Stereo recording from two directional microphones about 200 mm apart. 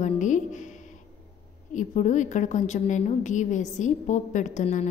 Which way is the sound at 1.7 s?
40° left (ahead or behind).